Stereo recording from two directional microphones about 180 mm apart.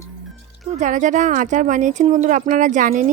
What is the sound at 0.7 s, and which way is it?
Speech, 40° right (ahead or behind).